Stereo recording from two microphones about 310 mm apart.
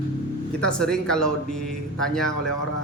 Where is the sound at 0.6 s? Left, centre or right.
Centre.